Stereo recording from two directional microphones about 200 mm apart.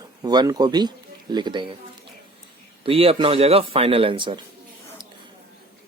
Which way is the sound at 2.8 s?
30° right (ahead or behind).